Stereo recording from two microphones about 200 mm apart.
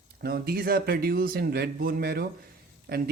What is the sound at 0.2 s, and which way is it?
Speech, 50° right (ahead or behind).